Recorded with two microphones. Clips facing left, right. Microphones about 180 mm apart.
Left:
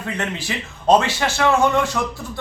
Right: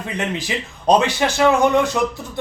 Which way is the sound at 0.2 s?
15° right (ahead or behind).